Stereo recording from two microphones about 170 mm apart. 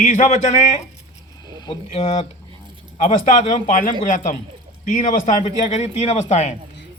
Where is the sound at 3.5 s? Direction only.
50° left (ahead or behind).